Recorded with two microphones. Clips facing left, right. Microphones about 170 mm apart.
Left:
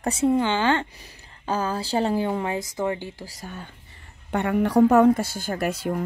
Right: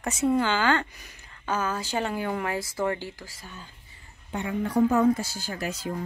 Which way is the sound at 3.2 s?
40° left (ahead or behind).